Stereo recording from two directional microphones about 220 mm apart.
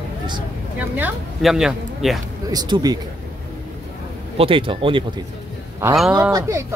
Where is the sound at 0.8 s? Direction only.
5° right (ahead or behind).